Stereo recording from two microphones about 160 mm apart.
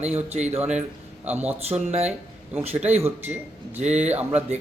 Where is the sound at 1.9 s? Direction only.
45° right (ahead or behind).